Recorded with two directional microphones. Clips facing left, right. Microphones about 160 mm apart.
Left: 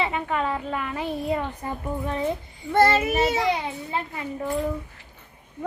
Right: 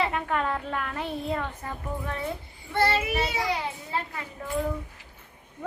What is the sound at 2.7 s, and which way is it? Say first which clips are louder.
Speech: left 6 dB; 45° left (ahead or behind).